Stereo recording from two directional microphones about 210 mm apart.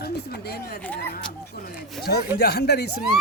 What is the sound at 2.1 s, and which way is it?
Speech, 50° left (ahead or behind).